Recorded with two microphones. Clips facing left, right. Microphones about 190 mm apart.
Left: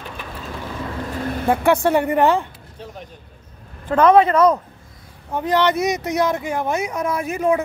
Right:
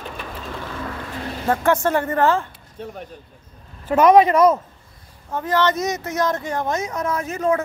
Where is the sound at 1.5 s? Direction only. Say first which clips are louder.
Left 2 dB; 15° left (ahead or behind).